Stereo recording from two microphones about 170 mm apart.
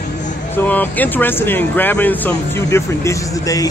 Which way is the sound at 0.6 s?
10° left (ahead or behind).